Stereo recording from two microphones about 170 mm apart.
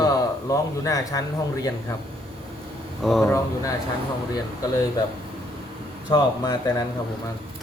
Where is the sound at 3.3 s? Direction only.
15° left (ahead or behind).